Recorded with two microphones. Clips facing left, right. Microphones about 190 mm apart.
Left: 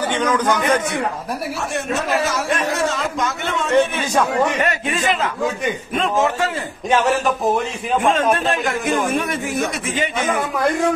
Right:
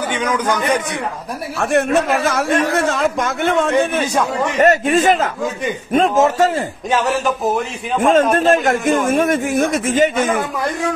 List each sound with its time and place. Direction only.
0.1 s a man's voice: 10° right (ahead or behind)
1.6 s a man's voice: 60° right (ahead or behind); by 6.5 s 40° right (ahead or behind)
6.9 s music: centre (ahead or behind)
8.0 s a man's voice: 40° right (ahead or behind)